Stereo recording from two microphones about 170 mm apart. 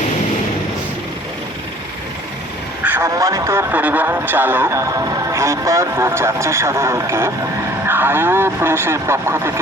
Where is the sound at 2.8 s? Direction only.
15° right (ahead or behind).